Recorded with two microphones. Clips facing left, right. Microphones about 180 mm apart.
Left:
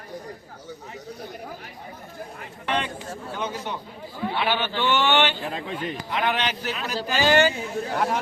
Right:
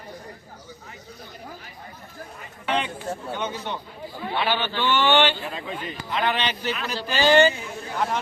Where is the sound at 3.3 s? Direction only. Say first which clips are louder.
Left 2 dB; 5° left (ahead or behind).